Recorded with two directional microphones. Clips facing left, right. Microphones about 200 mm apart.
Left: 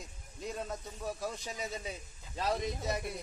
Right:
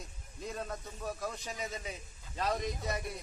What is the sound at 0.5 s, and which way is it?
Speech, 5° left (ahead or behind).